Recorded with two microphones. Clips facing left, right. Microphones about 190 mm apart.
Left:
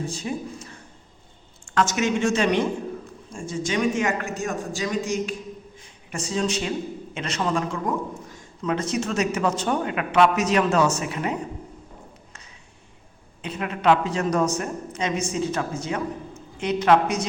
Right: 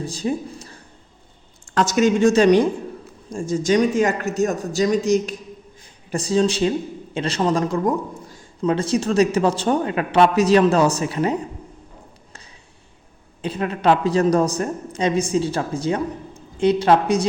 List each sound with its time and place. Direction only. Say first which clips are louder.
0.0 s speech: right 5 dB; 35° right (ahead or behind)
13.4 s speech: right 4 dB; 35° right (ahead or behind)